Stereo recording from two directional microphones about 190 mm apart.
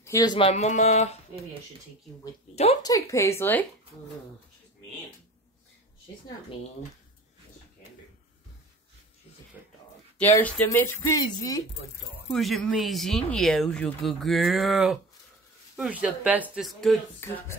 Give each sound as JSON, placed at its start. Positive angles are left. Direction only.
{"t": 0.0, "sound": "speech", "side_deg": 20}
{"t": 2.5, "sound": "speech", "side_deg": 35}
{"t": 2.8, "sound": "speech", "side_deg": 15}
{"t": 10.1, "sound": "speech", "side_deg": 10}
{"t": 12.3, "sound": "speech", "side_deg": 0}
{"t": 17.2, "sound": "speech", "side_deg": 10}